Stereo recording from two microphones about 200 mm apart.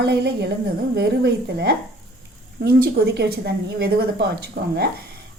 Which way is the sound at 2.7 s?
55° right (ahead or behind).